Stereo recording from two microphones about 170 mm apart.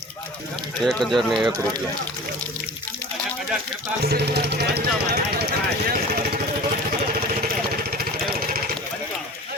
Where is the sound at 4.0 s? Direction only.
70° right (ahead or behind).